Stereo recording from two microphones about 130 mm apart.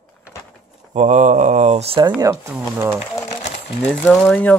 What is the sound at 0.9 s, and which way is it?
Speech, 70° right (ahead or behind).